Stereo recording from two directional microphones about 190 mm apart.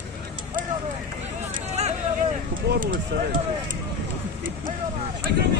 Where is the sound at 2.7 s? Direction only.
45° right (ahead or behind).